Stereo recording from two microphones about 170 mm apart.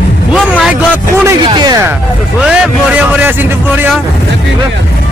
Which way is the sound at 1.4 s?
25° right (ahead or behind).